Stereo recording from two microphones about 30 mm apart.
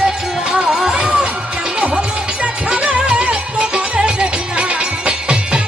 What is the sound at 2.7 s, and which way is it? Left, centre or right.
Music, right.